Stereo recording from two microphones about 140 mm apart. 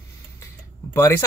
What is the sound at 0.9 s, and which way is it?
Speech, 20° left (ahead or behind).